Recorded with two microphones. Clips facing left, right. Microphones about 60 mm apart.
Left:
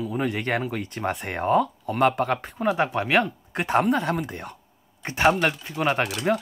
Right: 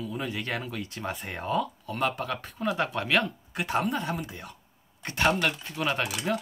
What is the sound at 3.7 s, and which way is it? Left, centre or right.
Speech, left.